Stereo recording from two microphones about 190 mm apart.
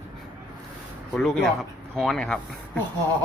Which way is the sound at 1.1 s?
Centre (ahead or behind).